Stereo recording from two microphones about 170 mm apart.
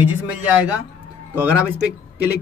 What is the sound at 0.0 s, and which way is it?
Speech, 10° right (ahead or behind).